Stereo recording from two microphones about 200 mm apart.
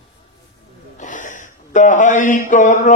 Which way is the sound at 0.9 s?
40° left (ahead or behind).